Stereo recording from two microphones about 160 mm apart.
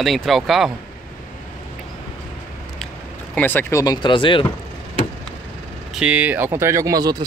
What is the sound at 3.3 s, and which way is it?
Speech, 15° left (ahead or behind).